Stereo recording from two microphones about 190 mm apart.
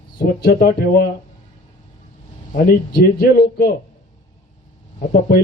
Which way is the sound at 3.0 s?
55° left (ahead or behind).